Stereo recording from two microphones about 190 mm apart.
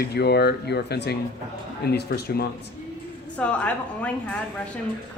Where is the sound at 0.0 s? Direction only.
60° left (ahead or behind).